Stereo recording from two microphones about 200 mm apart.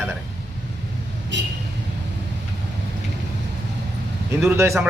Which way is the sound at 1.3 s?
65° right (ahead or behind).